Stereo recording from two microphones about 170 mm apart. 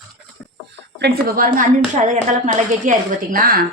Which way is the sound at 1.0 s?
55° right (ahead or behind).